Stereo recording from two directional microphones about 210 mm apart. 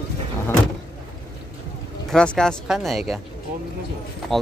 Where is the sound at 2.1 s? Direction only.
5° left (ahead or behind).